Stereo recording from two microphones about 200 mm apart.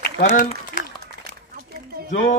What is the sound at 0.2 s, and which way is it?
Speech, 40° left (ahead or behind).